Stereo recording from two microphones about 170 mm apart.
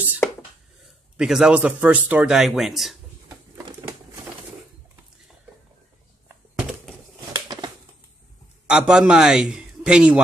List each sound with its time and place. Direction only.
1.1 s a man's voice: 5° right (ahead or behind)
8.6 s a man's voice: 5° right (ahead or behind)